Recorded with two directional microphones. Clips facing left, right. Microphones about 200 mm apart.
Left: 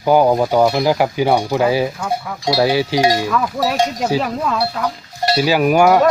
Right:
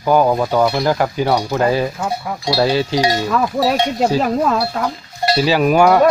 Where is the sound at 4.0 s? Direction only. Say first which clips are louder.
Right 3 dB; 40° right (ahead or behind).